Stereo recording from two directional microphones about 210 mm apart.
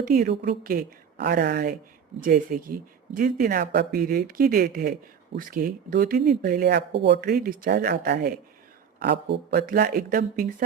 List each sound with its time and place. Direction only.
0.0 s speech: 45° right (ahead or behind)